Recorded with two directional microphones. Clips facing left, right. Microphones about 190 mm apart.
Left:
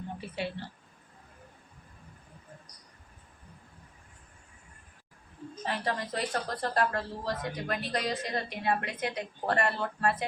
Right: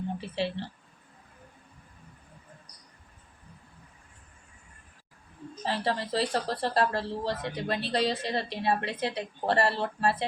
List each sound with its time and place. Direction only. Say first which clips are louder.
0.2 s speech: right 1 dB; 30° right (ahead or behind)
5.6 s speech: right 3 dB; 30° right (ahead or behind)